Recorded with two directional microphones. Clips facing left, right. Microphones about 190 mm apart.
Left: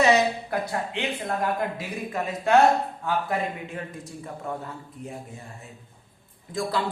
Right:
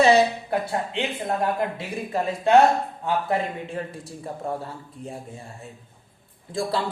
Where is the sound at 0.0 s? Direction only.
30° right (ahead or behind).